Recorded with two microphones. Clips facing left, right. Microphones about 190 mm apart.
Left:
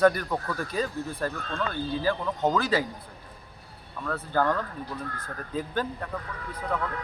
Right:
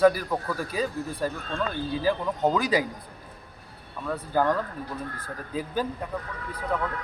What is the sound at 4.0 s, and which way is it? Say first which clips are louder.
Speech: right 1 dB; 10° right (ahead or behind).